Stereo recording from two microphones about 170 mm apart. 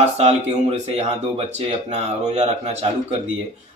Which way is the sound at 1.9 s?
40° right (ahead or behind).